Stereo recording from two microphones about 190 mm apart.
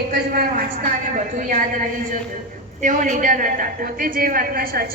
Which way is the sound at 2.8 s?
40° right (ahead or behind).